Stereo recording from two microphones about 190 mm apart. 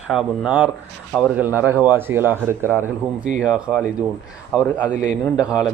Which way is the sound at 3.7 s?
Centre (ahead or behind).